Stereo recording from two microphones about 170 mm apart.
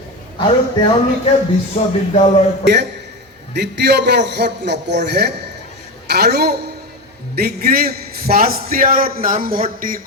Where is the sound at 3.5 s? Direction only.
85° right.